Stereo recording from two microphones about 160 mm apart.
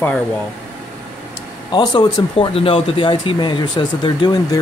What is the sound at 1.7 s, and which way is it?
Speech, 30° left (ahead or behind).